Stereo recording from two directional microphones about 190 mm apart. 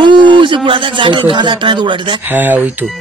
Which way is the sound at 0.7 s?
25° right (ahead or behind).